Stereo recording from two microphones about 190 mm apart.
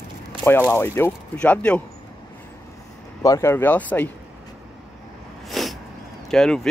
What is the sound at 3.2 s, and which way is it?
Speech, 15° left (ahead or behind).